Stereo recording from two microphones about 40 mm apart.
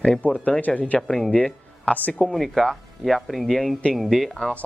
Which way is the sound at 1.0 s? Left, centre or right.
Centre.